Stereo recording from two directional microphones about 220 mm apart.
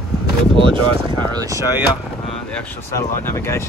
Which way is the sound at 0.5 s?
20° right (ahead or behind).